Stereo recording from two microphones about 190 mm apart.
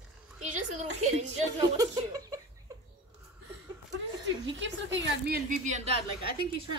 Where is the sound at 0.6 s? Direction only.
40° right (ahead or behind).